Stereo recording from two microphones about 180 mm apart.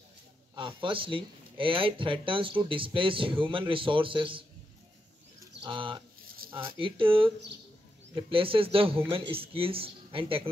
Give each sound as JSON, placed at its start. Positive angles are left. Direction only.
{"t": 0.6, "sound": "speech", "side_deg": -30}
{"t": 5.6, "sound": "speech", "side_deg": -30}
{"t": 6.2, "sound": "a sound", "side_deg": -55}
{"t": 6.8, "sound": "speech", "side_deg": -30}